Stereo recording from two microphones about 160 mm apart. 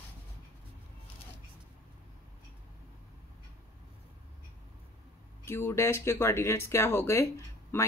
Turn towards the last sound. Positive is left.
turn(degrees=15)  # may be behind; listen again after turning